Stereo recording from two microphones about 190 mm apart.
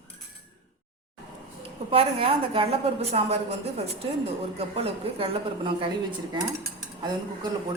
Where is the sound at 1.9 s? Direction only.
30° right (ahead or behind).